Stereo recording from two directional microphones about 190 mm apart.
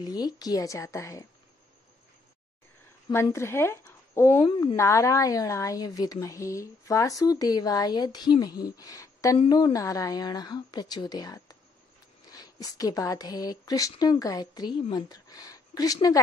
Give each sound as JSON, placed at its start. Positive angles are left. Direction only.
{"t": 0.0, "sound": "a woman's voice", "side_deg": 20}
{"t": 3.3, "sound": "speech", "side_deg": 15}
{"t": 4.4, "sound": "speech", "side_deg": 30}
{"t": 4.7, "sound": "a woman's voice", "side_deg": 15}